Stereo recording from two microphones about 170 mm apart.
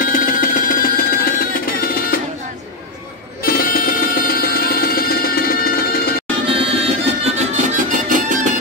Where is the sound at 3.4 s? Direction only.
60° left (ahead or behind).